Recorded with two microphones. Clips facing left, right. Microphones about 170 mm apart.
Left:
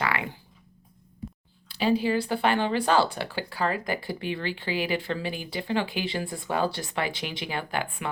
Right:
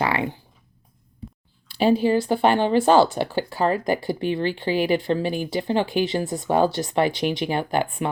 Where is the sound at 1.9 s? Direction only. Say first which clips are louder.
Right 5 dB; 45° right (ahead or behind).